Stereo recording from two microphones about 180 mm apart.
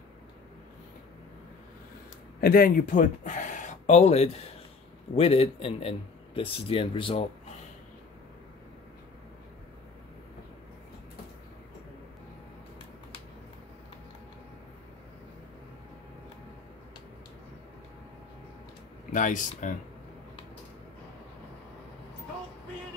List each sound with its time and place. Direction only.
2.4 s speech: 55° left (ahead or behind); by 7.2 s 30° left (ahead or behind)
19.1 s speech: 45° left (ahead or behind)